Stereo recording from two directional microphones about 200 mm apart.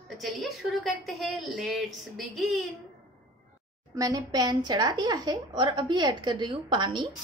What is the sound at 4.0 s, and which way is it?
A woman's voice, 20° right (ahead or behind).